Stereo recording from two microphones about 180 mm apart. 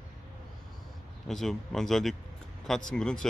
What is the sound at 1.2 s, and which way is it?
Speech, centre (ahead or behind).